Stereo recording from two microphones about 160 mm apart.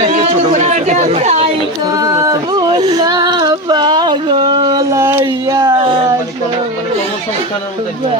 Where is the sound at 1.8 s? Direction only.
20° right (ahead or behind).